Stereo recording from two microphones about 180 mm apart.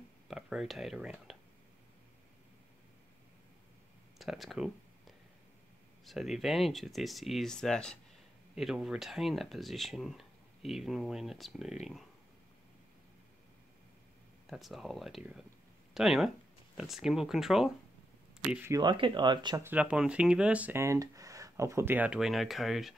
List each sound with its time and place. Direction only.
0.3 s speech: centre (ahead or behind)
4.2 s a sound: centre (ahead or behind)
6.0 s speech: centre (ahead or behind)
14.5 s speech: centre (ahead or behind)
18.7 s speech: 25° right (ahead or behind)
19.6 s speech: 10° right (ahead or behind)